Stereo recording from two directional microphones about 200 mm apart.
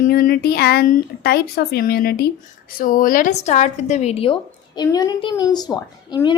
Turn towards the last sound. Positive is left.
turn(degrees=20)  # may be behind; listen again after turning